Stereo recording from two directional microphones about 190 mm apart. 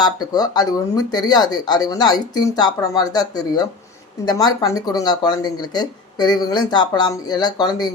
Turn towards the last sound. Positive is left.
turn(degrees=20)  # may be behind; listen again after turning